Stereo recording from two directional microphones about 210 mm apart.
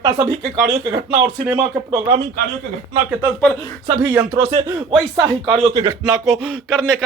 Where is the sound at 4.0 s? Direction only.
10° right (ahead or behind).